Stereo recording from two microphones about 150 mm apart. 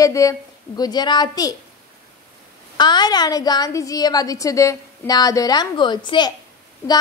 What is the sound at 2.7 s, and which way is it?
A woman's voice, 30° left (ahead or behind).